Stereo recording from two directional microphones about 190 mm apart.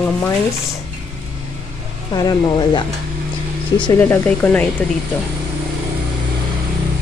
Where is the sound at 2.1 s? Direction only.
20° left (ahead or behind).